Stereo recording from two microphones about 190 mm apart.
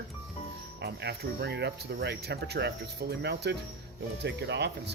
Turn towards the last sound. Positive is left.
turn(degrees=-65)  # may be behind; listen again after turning